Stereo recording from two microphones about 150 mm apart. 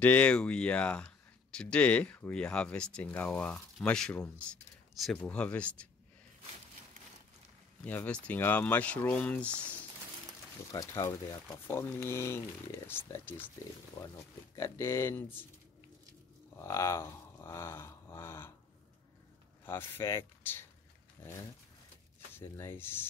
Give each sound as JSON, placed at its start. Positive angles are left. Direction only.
{"t": 0.0, "sound": "speech", "side_deg": 10}
{"t": 7.8, "sound": "speech", "side_deg": 10}
{"t": 10.7, "sound": "speech", "side_deg": 20}
{"t": 14.5, "sound": "speech", "side_deg": 20}
{"t": 16.5, "sound": "speech", "side_deg": 20}
{"t": 19.6, "sound": "speech", "side_deg": 15}
{"t": 22.6, "sound": "speech", "side_deg": 15}